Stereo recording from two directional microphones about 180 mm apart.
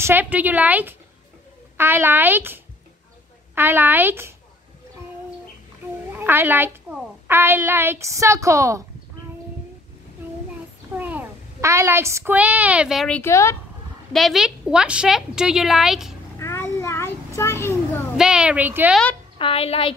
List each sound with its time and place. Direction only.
0.0 s a woman's voice: 10° right (ahead or behind)
6.1 s a woman's voice: 10° right (ahead or behind)
11.0 s a child's voice: 10° right (ahead or behind)
13.2 s speech: 15° left (ahead or behind)
14.1 s a woman's voice: centre (ahead or behind)
16.3 s a sound: 15° left (ahead or behind)
18.1 s a woman's voice: 5° right (ahead or behind)
19.3 s a child's voice: 30° left (ahead or behind)